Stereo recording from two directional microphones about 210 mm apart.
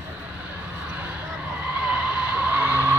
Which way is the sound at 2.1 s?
5° right (ahead or behind).